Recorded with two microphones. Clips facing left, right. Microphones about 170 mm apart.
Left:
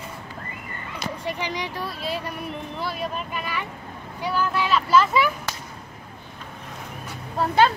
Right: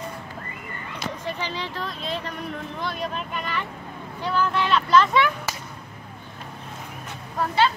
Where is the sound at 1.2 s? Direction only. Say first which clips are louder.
Left 3 dB; 15° left (ahead or behind).